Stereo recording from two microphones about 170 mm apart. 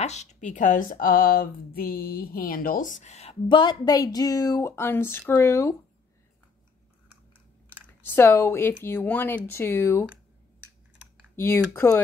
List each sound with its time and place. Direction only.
0.0 s speech: 40° left (ahead or behind); by 5.8 s 15° left (ahead or behind)
8.0 s speech: 10° left (ahead or behind)
11.3 s speech: 15° left (ahead or behind)